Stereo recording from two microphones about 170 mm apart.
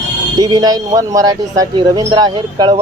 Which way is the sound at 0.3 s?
25° right (ahead or behind).